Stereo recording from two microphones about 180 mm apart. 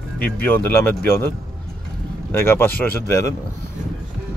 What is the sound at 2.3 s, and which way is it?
Speech, 15° left (ahead or behind).